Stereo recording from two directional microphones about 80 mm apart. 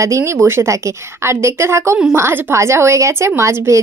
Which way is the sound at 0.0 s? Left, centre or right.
Right.